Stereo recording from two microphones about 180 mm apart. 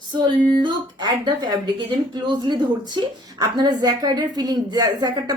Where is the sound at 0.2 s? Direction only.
25° right (ahead or behind).